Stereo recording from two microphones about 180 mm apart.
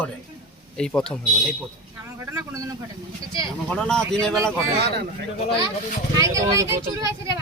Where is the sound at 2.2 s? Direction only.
15° right (ahead or behind).